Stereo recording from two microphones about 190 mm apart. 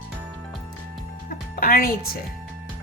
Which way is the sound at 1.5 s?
50° left (ahead or behind).